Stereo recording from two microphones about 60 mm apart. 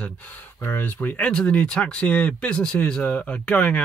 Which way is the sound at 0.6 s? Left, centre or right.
Left.